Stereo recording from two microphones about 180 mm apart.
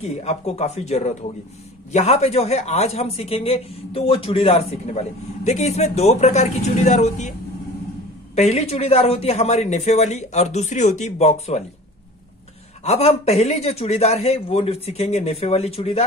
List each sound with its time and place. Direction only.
0.0 s speech: 35° left (ahead or behind)
8.4 s speech: 35° left (ahead or behind)
12.8 s speech: 35° left (ahead or behind)